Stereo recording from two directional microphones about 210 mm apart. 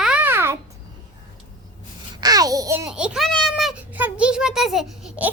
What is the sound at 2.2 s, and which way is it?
Babbling, 15° right (ahead or behind).